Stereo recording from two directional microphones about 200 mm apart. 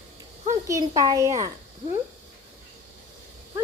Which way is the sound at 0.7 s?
15° right (ahead or behind).